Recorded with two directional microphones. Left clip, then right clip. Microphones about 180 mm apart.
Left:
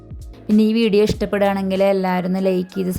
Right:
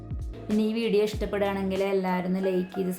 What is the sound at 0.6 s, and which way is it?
Speech, 55° left (ahead or behind).